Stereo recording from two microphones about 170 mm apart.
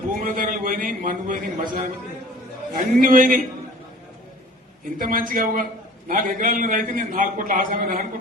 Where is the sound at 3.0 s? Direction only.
55° right (ahead or behind).